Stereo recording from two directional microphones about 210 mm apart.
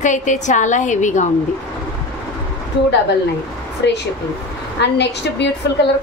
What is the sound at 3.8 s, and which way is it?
A woman's voice, 55° left (ahead or behind).